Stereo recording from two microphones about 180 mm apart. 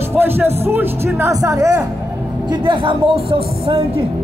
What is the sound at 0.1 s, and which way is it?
A woman's voice, 15° right (ahead or behind).